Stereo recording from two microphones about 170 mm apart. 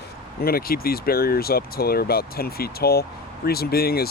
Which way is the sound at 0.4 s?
60° left (ahead or behind).